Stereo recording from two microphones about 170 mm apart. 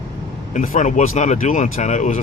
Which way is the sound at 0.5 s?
50° left (ahead or behind).